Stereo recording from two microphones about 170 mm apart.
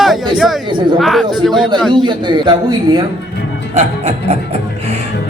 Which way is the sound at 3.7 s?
40° right (ahead or behind).